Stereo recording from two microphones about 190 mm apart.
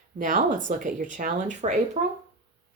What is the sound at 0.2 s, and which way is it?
Speech, 45° right (ahead or behind).